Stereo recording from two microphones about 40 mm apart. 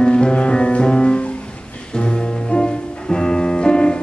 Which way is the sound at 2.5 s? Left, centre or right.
Left.